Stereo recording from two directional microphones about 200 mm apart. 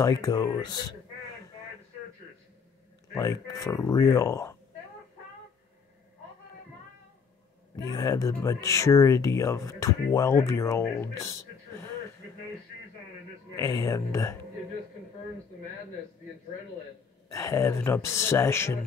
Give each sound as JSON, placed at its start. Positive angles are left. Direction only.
{"t": 0.0, "sound": "speech", "side_deg": 15}
{"t": 3.2, "sound": "speech", "side_deg": 15}
{"t": 7.7, "sound": "speech", "side_deg": 15}
{"t": 13.6, "sound": "speech", "side_deg": 15}
{"t": 17.3, "sound": "speech", "side_deg": 15}